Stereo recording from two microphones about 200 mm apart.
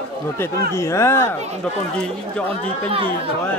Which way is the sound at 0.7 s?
15° left (ahead or behind).